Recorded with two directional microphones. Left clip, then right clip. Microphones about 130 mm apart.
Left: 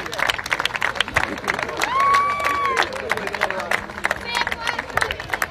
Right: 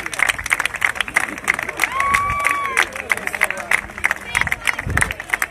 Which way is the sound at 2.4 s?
45° left (ahead or behind).